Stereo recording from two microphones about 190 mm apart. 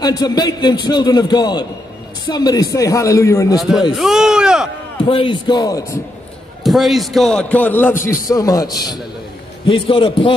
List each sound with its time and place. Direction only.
0.0 s a man's voice: 20° left (ahead or behind)
3.5 s a man's voice: centre (ahead or behind)
5.0 s a man's voice: 25° left (ahead or behind)
6.6 s a man's voice: centre (ahead or behind); by 10.3 s 25° left (ahead or behind)